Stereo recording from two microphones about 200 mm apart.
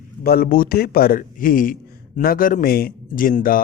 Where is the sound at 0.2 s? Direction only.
50° left (ahead or behind).